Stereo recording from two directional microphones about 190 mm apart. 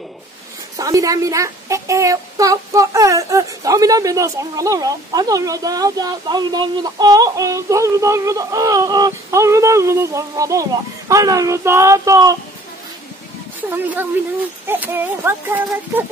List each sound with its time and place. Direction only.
0.7 s a woman's voice: 20° right (ahead or behind)
13.6 s a woman's voice: 10° right (ahead or behind)